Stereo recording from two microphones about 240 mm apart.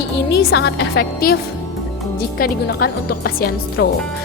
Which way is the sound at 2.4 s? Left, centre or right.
Left.